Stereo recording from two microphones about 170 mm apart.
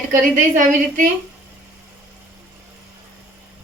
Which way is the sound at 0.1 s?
50° right (ahead or behind).